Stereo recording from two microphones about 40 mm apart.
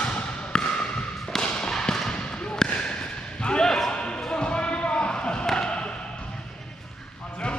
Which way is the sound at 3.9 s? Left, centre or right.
Left.